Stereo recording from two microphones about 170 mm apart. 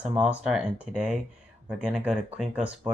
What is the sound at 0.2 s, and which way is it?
Speech, 5° right (ahead or behind).